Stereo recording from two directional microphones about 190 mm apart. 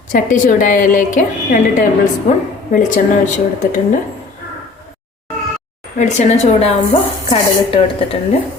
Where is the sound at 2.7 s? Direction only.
40° left (ahead or behind).